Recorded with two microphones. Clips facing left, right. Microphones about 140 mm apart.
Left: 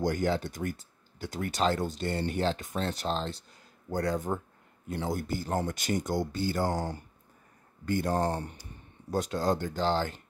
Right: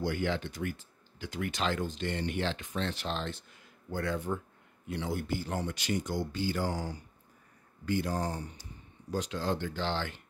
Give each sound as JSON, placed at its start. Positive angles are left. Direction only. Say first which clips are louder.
{"t": 0.0, "sound": "speech", "louder": "left 4 dB", "side_deg": 40}
{"t": 9.1, "sound": "speech", "louder": "left 4 dB", "side_deg": 45}